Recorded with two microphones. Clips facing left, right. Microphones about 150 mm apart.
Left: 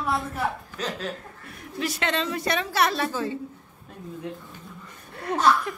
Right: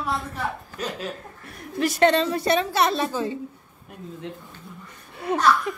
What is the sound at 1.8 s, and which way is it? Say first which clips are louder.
A woman's voice: right 8 dB; 40° right (ahead or behind).